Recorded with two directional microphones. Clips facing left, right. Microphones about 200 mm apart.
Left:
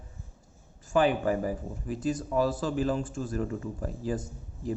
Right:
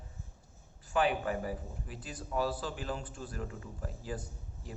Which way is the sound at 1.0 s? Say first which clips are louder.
Left 6 dB; 40° left (ahead or behind).